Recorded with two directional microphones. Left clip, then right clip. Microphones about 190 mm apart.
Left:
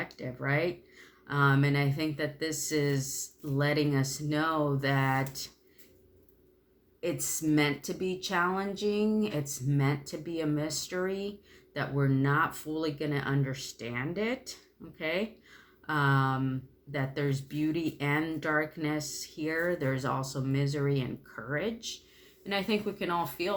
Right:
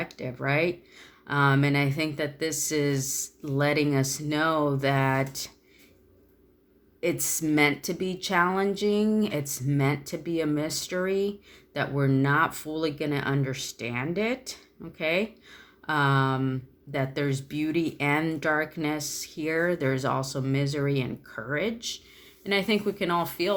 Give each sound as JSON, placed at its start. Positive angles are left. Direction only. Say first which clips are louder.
{"t": 0.0, "sound": "speech", "louder": "right 4 dB", "side_deg": -40}
{"t": 7.0, "sound": "speech", "louder": "right 5 dB", "side_deg": -45}